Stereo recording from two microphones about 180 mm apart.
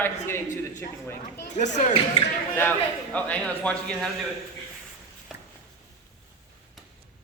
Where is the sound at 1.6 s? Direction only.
40° left (ahead or behind).